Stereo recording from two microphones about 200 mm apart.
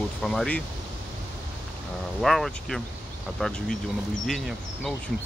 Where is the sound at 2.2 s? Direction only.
Centre (ahead or behind).